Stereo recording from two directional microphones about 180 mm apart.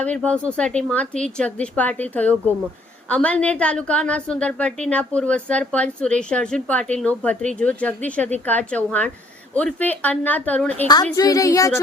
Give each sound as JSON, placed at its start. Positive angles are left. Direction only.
{"t": 0.0, "sound": "a woman's voice", "side_deg": 5}
{"t": 11.1, "sound": "a woman's voice", "side_deg": 20}